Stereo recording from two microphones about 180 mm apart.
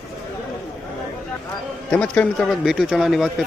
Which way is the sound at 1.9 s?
10° left (ahead or behind).